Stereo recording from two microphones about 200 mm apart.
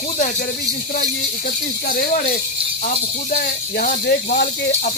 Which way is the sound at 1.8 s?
45° left (ahead or behind).